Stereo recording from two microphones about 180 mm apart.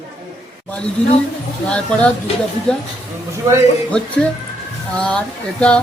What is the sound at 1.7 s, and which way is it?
Speech, 5° left (ahead or behind).